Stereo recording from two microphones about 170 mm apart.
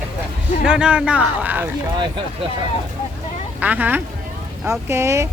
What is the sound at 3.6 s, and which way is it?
Speech, 10° right (ahead or behind).